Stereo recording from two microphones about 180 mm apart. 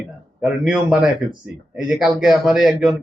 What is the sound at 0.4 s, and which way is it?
Speech, 5° right (ahead or behind).